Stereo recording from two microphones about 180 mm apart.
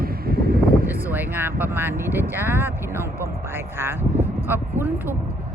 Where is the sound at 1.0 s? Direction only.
10° right (ahead or behind).